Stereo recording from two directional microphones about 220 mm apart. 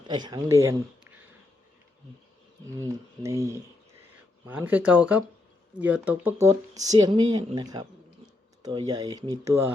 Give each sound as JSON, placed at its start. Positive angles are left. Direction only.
{"t": 0.1, "sound": "speech", "side_deg": -20}
{"t": 3.2, "sound": "speech", "side_deg": -15}